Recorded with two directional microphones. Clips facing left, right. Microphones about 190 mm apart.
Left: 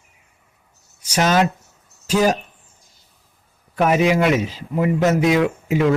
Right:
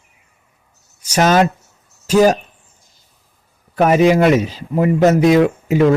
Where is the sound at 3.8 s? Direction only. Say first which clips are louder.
Right 5 dB; 45° right (ahead or behind).